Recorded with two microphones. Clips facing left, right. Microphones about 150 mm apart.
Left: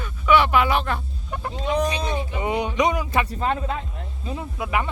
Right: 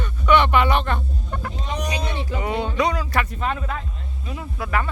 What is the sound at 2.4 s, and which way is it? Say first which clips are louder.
Speech: even; 20° left (ahead or behind).